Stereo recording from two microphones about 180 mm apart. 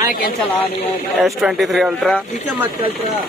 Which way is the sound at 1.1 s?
Centre (ahead or behind).